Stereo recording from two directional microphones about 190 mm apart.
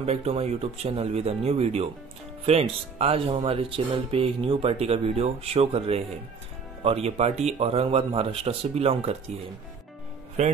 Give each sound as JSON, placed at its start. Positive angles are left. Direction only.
{"t": 0.0, "sound": "speech", "side_deg": -35}
{"t": 10.4, "sound": "speech", "side_deg": -35}